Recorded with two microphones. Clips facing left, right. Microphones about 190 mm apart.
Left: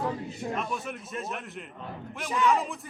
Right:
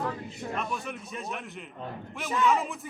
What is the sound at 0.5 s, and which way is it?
A man's voice, centre (ahead or behind).